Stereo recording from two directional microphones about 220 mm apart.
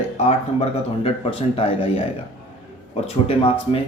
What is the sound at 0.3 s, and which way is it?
Speech, 30° left (ahead or behind).